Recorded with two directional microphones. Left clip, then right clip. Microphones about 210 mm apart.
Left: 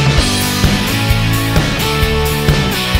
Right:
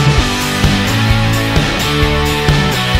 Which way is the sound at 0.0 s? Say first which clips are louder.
Even; centre (ahead or behind).